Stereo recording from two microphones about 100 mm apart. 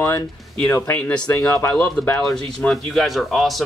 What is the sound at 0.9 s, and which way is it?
Speech, 15° left (ahead or behind).